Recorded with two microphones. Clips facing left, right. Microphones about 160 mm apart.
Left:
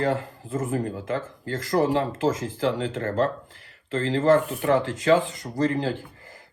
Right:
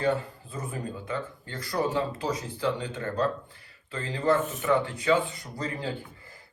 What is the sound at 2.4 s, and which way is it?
Speech, 90° left.